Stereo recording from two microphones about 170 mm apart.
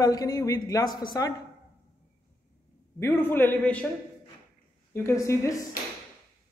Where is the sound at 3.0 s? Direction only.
15° left (ahead or behind).